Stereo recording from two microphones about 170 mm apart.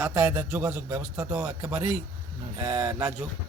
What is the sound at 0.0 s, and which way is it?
A man's voice, 10° right (ahead or behind).